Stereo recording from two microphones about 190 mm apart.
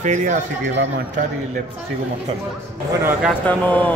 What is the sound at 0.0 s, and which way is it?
Speech, 40° right (ahead or behind).